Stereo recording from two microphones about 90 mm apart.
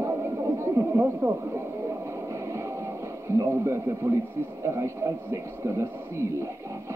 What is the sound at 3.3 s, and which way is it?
Speech, 30° right (ahead or behind).